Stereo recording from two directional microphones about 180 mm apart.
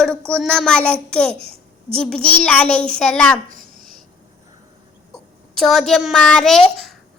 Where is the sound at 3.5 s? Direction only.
50° right (ahead or behind).